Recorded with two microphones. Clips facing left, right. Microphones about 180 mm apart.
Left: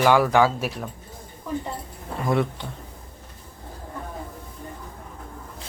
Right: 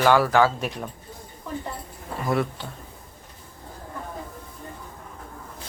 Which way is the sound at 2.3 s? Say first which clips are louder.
Left 1 dB; 20° left (ahead or behind).